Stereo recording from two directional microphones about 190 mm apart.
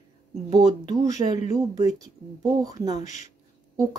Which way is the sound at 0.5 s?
20° right (ahead or behind).